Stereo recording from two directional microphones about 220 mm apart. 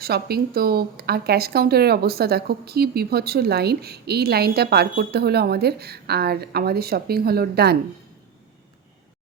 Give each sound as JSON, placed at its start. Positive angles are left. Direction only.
{"t": 0.0, "sound": "speech", "side_deg": -45}